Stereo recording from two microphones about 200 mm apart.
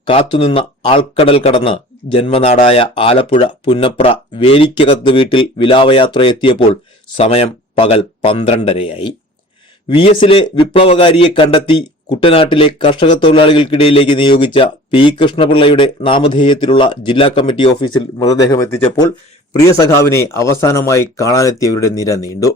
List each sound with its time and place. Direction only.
0.1 s a man's voice: 30° left (ahead or behind)
10.2 s a man's voice: 30° left (ahead or behind)